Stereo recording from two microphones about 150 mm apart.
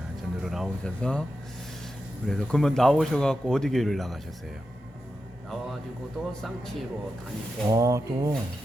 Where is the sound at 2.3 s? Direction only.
5° left (ahead or behind).